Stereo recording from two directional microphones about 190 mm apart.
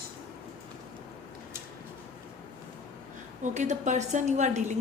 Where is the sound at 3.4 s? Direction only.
40° right (ahead or behind).